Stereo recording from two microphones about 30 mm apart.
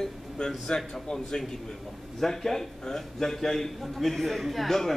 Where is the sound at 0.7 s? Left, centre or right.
Left.